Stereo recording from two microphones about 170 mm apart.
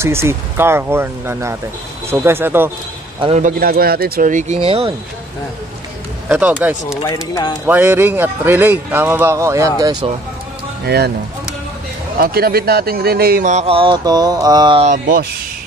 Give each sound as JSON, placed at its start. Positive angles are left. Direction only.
{"t": 0.0, "sound": "speech", "side_deg": -15}
{"t": 3.2, "sound": "speech", "side_deg": -40}
{"t": 6.2, "sound": "speech", "side_deg": -10}
{"t": 7.0, "sound": "speech", "side_deg": 20}
{"t": 7.6, "sound": "speech", "side_deg": -10}
{"t": 12.2, "sound": "a man's voice", "side_deg": -65}
{"t": 13.5, "sound": "a sound", "side_deg": -40}
{"t": 14.9, "sound": "speech", "side_deg": -55}